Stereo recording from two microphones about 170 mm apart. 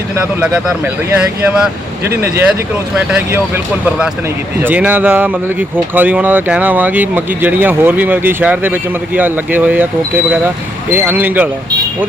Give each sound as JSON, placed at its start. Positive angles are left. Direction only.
{"t": 0.3, "sound": "speech", "side_deg": -10}
{"t": 10.9, "sound": "speech", "side_deg": -10}